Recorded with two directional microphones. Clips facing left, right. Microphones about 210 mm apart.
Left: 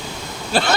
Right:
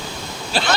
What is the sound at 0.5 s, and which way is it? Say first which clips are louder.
Speech: left 4 dB; 55° left (ahead or behind).